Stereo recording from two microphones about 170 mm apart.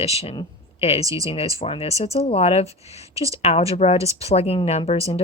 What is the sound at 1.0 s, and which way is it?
Speech, 20° right (ahead or behind).